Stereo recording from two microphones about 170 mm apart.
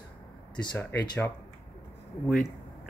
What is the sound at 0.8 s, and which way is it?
Speech, 15° left (ahead or behind).